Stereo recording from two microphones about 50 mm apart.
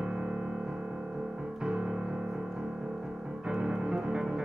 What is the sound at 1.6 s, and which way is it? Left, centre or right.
Music, centre.